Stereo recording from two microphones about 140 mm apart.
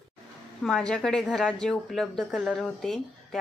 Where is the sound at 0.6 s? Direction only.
5° left (ahead or behind).